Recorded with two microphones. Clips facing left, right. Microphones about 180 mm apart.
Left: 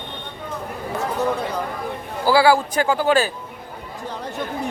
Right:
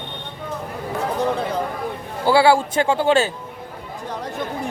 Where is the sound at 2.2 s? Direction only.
25° right (ahead or behind).